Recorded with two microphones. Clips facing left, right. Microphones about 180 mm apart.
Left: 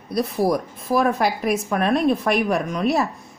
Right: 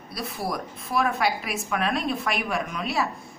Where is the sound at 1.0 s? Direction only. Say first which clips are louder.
Left 5 dB; 40° left (ahead or behind).